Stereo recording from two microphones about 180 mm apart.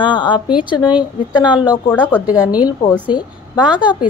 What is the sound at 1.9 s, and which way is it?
Speech, 5° left (ahead or behind).